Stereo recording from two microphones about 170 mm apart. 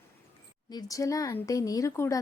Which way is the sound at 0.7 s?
20° left (ahead or behind).